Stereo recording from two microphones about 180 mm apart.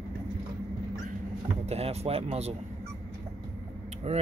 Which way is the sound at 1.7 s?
35° right (ahead or behind).